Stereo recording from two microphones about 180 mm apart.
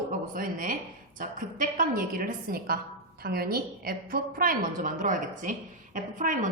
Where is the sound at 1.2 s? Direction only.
50° right (ahead or behind).